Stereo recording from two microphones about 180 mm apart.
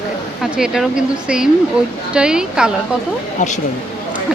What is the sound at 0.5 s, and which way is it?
A woman's voice, 5° right (ahead or behind).